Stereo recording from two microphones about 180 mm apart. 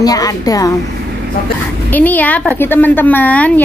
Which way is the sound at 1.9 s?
10° left (ahead or behind).